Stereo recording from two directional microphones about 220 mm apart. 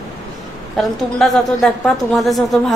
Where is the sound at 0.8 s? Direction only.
Centre (ahead or behind).